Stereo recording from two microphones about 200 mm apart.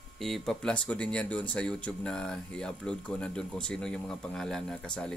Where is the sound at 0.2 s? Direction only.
Centre (ahead or behind).